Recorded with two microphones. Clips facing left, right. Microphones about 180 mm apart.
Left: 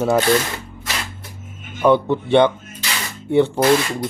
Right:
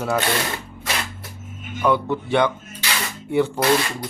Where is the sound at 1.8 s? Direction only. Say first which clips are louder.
Left 5 dB; 25° left (ahead or behind).